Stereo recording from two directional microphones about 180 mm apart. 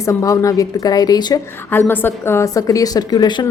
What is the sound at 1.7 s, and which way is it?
A woman's voice, 10° left (ahead or behind).